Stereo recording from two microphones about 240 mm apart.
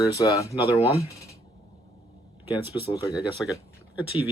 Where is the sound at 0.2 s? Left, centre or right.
Centre.